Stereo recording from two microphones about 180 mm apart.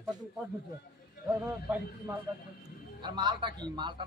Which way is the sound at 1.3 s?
15° right (ahead or behind).